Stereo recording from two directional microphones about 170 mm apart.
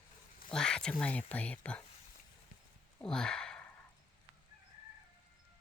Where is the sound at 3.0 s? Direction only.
5° left (ahead or behind).